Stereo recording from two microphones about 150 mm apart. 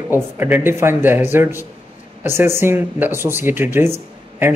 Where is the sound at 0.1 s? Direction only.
15° right (ahead or behind).